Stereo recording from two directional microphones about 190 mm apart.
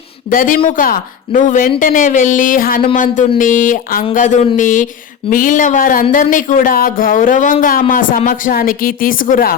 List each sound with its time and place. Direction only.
0.3 s speech: 45° left (ahead or behind)